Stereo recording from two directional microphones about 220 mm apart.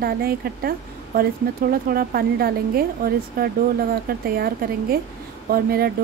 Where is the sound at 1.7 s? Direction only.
45° right (ahead or behind).